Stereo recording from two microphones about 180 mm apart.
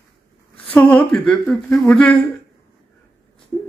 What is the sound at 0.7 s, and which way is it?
Speech, 10° left (ahead or behind).